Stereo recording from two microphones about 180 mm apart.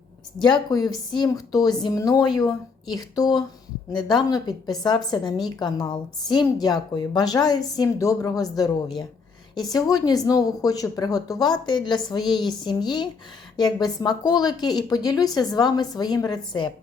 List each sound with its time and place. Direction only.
0.7 s a woman's voice: 20° left (ahead or behind)